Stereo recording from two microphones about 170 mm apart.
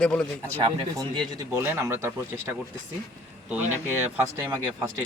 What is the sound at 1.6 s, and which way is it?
Speech, 15° right (ahead or behind).